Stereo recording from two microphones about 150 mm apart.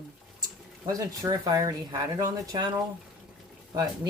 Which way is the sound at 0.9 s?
25° right (ahead or behind).